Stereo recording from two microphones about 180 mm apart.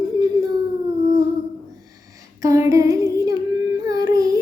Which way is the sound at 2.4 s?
20° right (ahead or behind).